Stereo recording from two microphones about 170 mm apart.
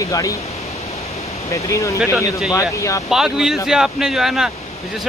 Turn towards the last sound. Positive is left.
turn(degrees=0)  # may be behind; listen again after turning